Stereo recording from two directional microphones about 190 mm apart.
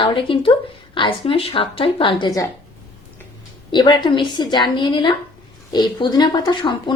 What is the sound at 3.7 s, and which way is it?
A woman's voice, 25° left (ahead or behind).